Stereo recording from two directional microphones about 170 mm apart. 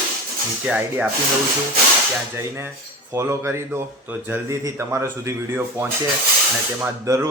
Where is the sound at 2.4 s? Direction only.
15° right (ahead or behind).